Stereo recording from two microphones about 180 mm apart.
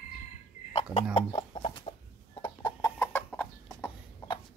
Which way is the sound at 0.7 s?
40° left (ahead or behind).